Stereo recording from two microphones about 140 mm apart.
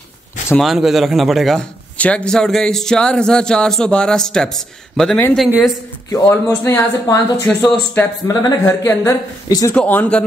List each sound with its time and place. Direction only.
0.6 s a man's voice: centre (ahead or behind)
6.0 s speech: 20° left (ahead or behind)
8.3 s speech: 25° left (ahead or behind)
8.6 s speech: 15° left (ahead or behind)
9.8 s speech: 10° left (ahead or behind)